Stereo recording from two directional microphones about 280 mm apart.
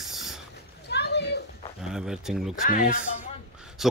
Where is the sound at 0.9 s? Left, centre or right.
Left.